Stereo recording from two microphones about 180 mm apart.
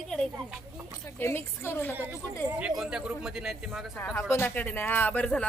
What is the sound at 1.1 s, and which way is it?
Speech, 15° left (ahead or behind).